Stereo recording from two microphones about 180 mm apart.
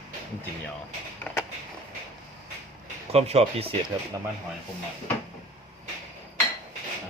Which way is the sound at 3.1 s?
35° right (ahead or behind).